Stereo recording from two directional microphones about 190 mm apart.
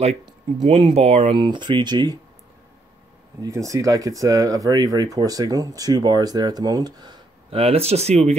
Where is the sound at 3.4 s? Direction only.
15° right (ahead or behind).